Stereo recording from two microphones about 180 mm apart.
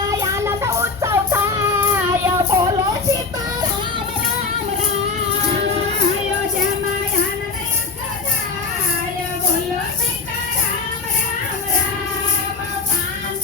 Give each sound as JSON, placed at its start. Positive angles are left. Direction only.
{"t": 0.0, "sound": "music", "side_deg": -20}